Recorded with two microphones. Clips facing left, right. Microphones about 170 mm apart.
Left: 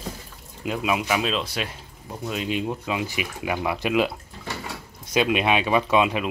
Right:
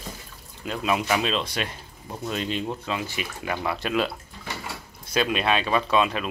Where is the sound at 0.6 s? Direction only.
10° left (ahead or behind).